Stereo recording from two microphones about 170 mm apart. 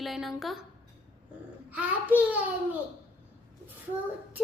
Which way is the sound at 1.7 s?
10° right (ahead or behind).